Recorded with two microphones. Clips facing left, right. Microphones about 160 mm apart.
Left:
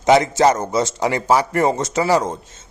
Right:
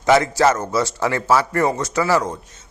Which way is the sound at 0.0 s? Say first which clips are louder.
Left 2 dB; 20° left (ahead or behind).